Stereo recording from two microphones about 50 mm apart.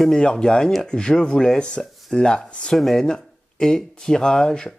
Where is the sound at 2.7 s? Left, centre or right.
Centre.